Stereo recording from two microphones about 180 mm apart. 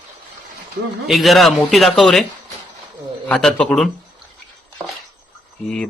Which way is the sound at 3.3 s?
5° left (ahead or behind).